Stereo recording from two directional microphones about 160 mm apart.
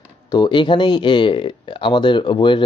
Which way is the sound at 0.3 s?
25° left (ahead or behind).